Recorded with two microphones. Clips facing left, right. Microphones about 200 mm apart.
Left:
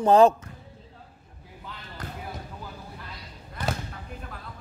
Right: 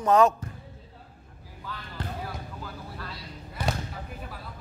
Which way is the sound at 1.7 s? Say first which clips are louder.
Right 4 dB; 20° left (ahead or behind).